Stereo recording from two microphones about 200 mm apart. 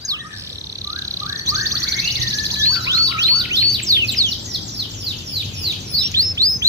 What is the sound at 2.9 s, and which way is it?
Bird, 15° right (ahead or behind).